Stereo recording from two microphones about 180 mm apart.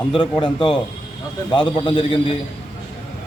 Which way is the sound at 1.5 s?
25° left (ahead or behind).